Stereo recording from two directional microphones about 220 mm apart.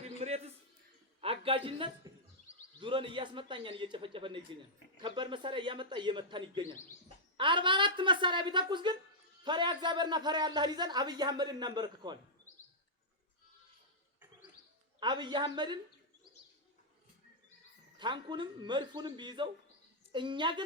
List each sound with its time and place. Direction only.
0.0 s a sound: 30° right (ahead or behind)
2.8 s a man's voice: 20° right (ahead or behind)
15.0 s a man's voice: 20° right (ahead or behind)
18.0 s a man's voice: 20° right (ahead or behind)